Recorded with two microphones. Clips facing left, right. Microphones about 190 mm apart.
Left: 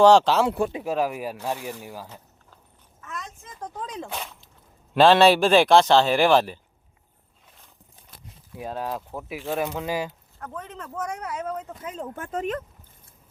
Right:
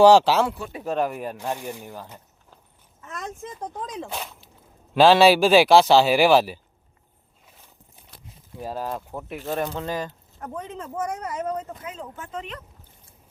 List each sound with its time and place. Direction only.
0.0 s speech: 5° right (ahead or behind)
0.9 s a man's voice: 5° left (ahead or behind)
3.1 s a sound: 50° right (ahead or behind)
3.6 s a man's voice: 10° right (ahead or behind)
8.6 s a man's voice: centre (ahead or behind)
10.3 s speech: 15° right (ahead or behind)
11.9 s speech: 50° left (ahead or behind)